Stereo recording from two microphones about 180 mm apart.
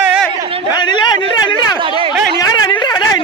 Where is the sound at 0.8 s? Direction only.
25° left (ahead or behind).